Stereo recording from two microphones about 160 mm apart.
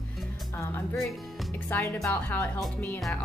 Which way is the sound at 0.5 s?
15° left (ahead or behind).